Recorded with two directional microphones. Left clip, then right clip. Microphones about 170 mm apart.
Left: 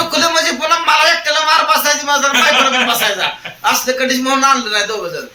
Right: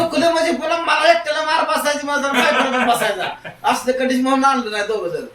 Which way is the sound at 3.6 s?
20° right (ahead or behind).